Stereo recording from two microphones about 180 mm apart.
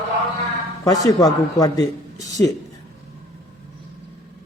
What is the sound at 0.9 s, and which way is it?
Speech, 20° left (ahead or behind).